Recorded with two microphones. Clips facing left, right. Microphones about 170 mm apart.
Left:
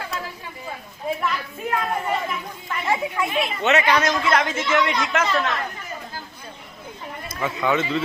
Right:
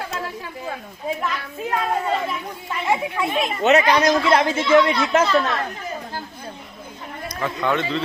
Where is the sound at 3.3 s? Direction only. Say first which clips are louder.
Right 4 dB; 40° right (ahead or behind).